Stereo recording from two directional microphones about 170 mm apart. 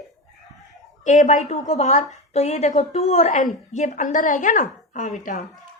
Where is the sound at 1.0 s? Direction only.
50° left (ahead or behind).